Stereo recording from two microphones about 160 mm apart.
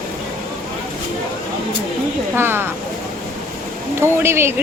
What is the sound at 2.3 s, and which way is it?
Speech, 15° right (ahead or behind).